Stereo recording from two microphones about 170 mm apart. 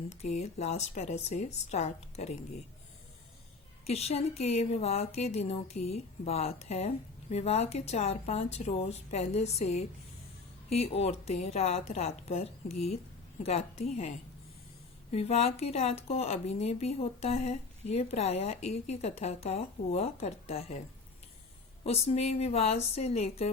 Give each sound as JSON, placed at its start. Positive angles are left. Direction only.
{"t": 0.1, "sound": "a woman's voice", "side_deg": 40}
{"t": 3.8, "sound": "a woman's voice", "side_deg": 40}
{"t": 15.1, "sound": "a woman's voice", "side_deg": 35}
{"t": 21.8, "sound": "a woman's voice", "side_deg": 35}